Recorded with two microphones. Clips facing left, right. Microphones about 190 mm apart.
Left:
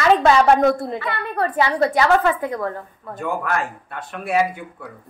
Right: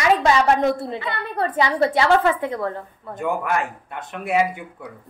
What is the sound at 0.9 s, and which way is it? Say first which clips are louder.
A woman's voice: left 2 dB; 25° right (ahead or behind).